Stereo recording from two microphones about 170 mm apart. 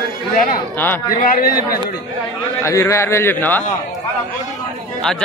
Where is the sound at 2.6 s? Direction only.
15° left (ahead or behind).